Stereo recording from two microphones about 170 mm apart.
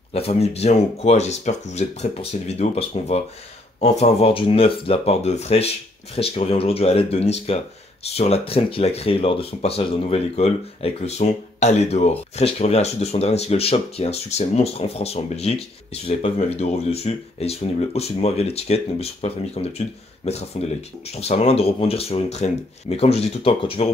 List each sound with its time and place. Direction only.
0.1 s speech: 35° left (ahead or behind)